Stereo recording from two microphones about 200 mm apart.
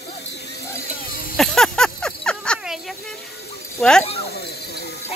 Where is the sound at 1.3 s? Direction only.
Centre (ahead or behind).